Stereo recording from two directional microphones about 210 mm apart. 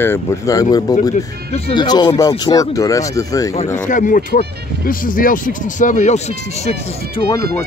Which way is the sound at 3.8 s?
40° left (ahead or behind).